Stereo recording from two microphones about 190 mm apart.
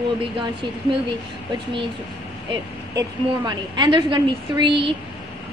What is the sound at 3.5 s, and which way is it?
A woman's voice, 25° right (ahead or behind).